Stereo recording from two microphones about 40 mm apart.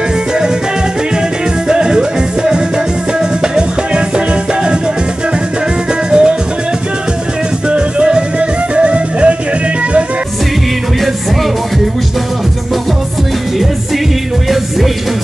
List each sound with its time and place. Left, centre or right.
1.7 s music: centre
6.0 s music: right
7.7 s music: right